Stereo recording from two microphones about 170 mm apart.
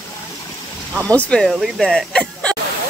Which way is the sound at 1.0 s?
10° left (ahead or behind).